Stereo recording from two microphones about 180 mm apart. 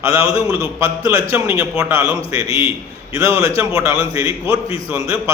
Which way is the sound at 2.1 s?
30° left (ahead or behind).